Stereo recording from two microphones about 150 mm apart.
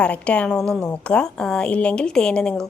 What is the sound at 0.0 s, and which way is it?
A woman's voice, 10° left (ahead or behind).